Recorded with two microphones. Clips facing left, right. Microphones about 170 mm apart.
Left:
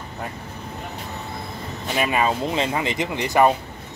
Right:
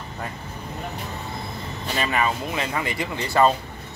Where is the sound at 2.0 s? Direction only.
20° left (ahead or behind).